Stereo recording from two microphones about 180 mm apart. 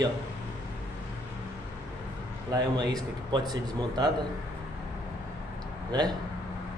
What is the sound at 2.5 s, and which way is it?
Speech, 20° right (ahead or behind).